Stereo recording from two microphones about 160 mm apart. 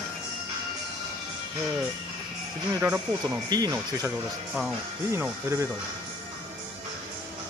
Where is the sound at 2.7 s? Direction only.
15° right (ahead or behind).